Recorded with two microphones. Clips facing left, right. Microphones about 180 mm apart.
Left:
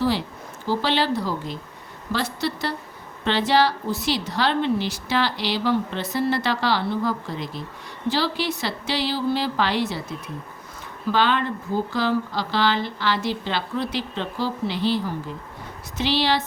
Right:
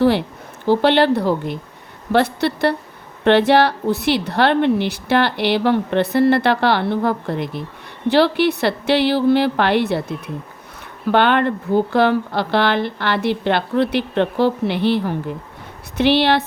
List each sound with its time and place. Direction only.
0.0 s speech: 60° right (ahead or behind)